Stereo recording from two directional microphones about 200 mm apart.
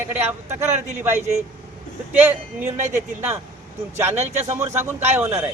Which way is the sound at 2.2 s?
10° right (ahead or behind).